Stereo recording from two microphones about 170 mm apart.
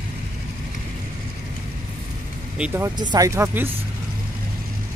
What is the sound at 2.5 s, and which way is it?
Speech, 5° right (ahead or behind).